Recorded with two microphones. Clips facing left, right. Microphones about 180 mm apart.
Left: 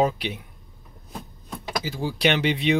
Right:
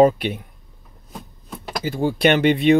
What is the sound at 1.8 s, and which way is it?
Speech, 55° right (ahead or behind).